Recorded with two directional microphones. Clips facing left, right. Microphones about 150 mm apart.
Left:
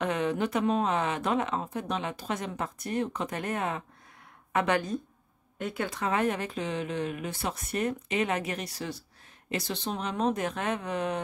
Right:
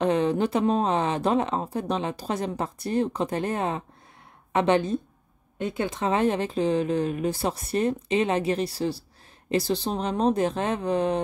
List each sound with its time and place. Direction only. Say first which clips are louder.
0.0 s speech: right 6 dB; 30° right (ahead or behind)